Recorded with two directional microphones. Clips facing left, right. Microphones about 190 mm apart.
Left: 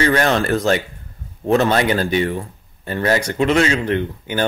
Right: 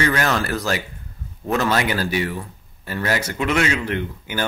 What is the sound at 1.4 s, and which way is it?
Speech, 30° left (ahead or behind).